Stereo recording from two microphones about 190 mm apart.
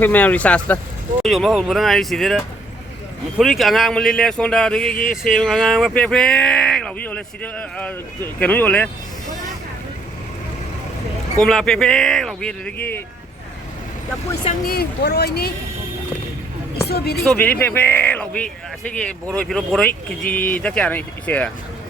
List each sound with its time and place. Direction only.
0.0 s speech: 10° left (ahead or behind)
4.9 s a sound: 45° left (ahead or behind)
5.3 s speech: centre (ahead or behind)
11.3 s speech: 5° left (ahead or behind)
14.4 s speech: 55° left (ahead or behind)
16.8 s speech: 55° left (ahead or behind)
17.2 s speech: 10° left (ahead or behind)